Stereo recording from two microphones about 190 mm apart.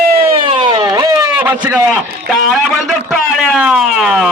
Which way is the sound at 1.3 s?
10° right (ahead or behind).